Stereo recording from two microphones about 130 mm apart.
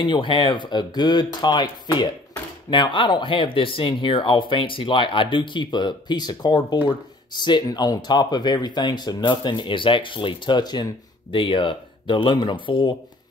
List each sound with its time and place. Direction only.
0.0 s speech: 40° left (ahead or behind)